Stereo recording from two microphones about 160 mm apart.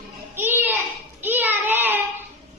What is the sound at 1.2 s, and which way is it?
Child singing, 10° right (ahead or behind).